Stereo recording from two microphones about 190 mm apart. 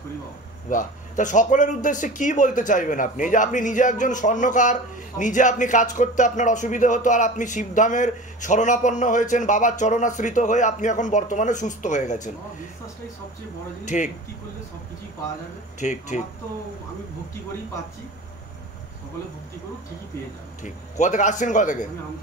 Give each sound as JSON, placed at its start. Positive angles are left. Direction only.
{"t": 0.7, "sound": "speech", "side_deg": 40}
{"t": 13.8, "sound": "speech", "side_deg": 40}
{"t": 15.8, "sound": "speech", "side_deg": 40}
{"t": 20.6, "sound": "speech", "side_deg": 40}